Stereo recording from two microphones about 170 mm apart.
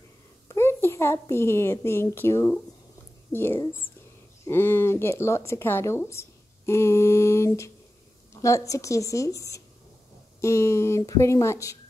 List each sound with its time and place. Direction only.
0.5 s a child's voice: 15° left (ahead or behind)